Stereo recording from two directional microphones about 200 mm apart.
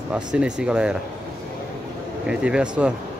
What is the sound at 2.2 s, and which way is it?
Speech, 5° right (ahead or behind).